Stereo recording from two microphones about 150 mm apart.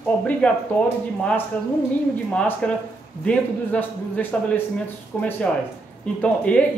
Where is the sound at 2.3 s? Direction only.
10° left (ahead or behind).